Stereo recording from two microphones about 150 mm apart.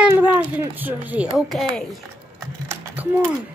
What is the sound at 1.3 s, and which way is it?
A woman's voice, centre (ahead or behind).